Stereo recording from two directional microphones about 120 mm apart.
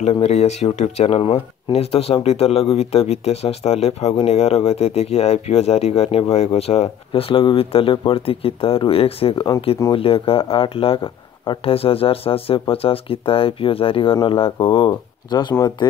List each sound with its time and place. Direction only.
0.1 s speech: 60° left (ahead or behind); by 15.5 s 35° left (ahead or behind)